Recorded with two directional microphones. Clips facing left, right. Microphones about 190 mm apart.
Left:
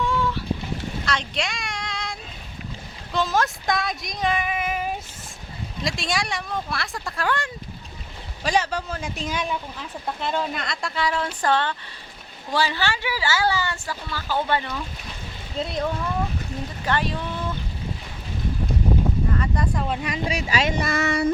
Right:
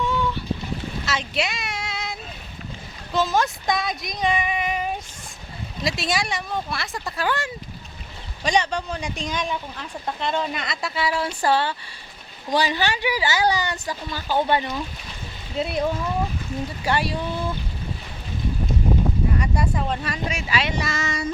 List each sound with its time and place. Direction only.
0.0 s boat: centre (ahead or behind)
1.0 s a sound: 5° right (ahead or behind)
3.1 s female singing: centre (ahead or behind)
5.8 s a woman's voice: centre (ahead or behind)
19.4 s a sound: 10° right (ahead or behind)
19.9 s speech: 10° left (ahead or behind)
20.2 s speech: 40° left (ahead or behind); by 21.2 s 60° left (ahead or behind)